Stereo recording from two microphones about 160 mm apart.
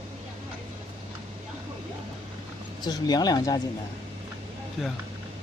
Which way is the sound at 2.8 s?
25° left (ahead or behind).